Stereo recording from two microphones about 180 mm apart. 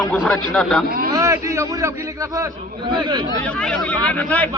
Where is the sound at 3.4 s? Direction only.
5° left (ahead or behind).